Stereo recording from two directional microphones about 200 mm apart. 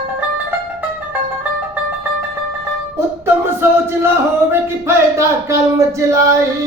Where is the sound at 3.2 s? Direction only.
10° right (ahead or behind).